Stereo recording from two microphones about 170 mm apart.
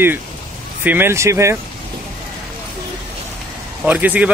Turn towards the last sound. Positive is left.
turn(degrees=-10)  # may be behind; listen again after turning